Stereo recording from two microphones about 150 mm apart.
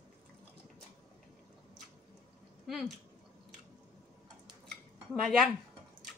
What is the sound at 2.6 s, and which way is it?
Speech, centre (ahead or behind).